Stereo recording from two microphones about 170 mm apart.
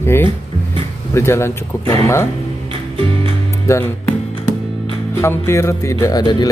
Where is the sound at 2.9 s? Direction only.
30° right (ahead or behind).